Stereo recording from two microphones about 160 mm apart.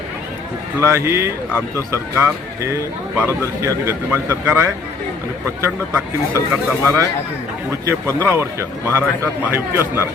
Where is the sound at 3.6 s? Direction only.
20° right (ahead or behind).